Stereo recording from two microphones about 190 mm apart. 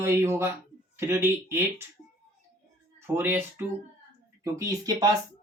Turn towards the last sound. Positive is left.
turn(degrees=-20)  # may be behind; listen again after turning